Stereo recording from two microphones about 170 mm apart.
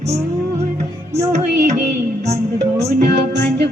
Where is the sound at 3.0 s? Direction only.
80° right.